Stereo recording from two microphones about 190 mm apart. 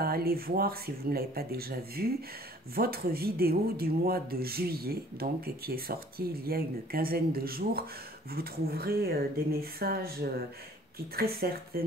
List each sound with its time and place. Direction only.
0.0 s speech: 55° right (ahead or behind)
11.1 s speech: 55° right (ahead or behind)